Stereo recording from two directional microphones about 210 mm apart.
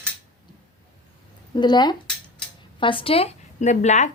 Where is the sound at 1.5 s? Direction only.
20° left (ahead or behind).